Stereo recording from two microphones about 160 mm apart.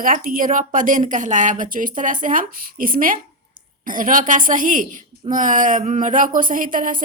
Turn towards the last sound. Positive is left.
turn(degrees=-55)  # may be behind; listen again after turning